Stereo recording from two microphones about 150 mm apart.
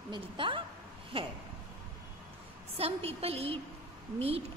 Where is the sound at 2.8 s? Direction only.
40° right (ahead or behind).